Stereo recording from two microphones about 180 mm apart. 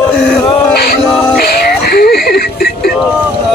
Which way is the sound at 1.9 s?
60° left (ahead or behind).